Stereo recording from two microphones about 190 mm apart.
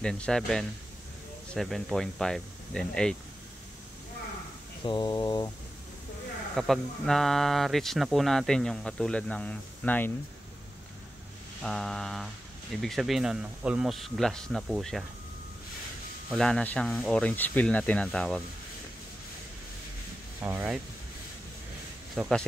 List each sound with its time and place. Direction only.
0.0 s speech: 5° left (ahead or behind)
4.8 s speech: 25° left (ahead or behind)
6.5 s speech: centre (ahead or behind)
11.6 s speech: centre (ahead or behind)
16.3 s speech: 5° left (ahead or behind)
20.3 s speech: 10° right (ahead or behind)
22.1 s speech: centre (ahead or behind)